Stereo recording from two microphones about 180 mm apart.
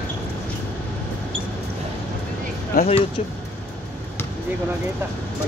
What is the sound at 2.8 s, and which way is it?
Speech, 55° left (ahead or behind).